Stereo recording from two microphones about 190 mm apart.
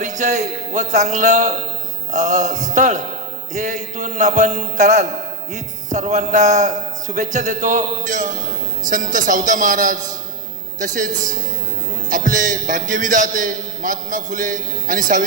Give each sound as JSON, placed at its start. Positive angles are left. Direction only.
{"t": 0.0, "sound": "a man's voice", "side_deg": -40}
{"t": 12.1, "sound": "a man's voice", "side_deg": -45}